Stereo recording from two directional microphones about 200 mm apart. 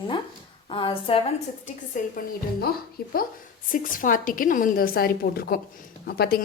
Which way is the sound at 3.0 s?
50° left (ahead or behind).